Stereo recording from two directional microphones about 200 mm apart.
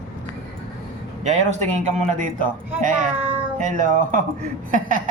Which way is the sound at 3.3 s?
40° right (ahead or behind).